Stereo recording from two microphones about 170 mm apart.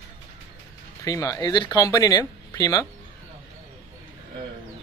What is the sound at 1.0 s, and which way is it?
Speech, 20° left (ahead or behind).